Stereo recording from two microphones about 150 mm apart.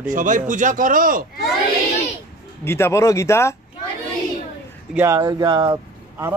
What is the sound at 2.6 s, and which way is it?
Speech, 15° left (ahead or behind).